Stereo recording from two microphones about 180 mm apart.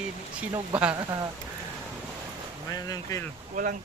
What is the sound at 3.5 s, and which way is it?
Speech, 45° right (ahead or behind).